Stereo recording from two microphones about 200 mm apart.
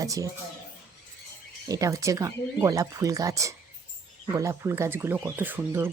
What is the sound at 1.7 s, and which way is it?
Speech, 15° right (ahead or behind).